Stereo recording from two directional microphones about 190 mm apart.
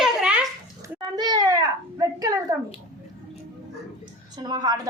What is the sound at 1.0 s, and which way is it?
A child's voice, 20° right (ahead or behind).